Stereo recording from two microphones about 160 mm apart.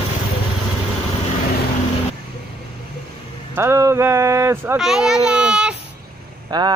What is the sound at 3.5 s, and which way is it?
Speech, 15° right (ahead or behind).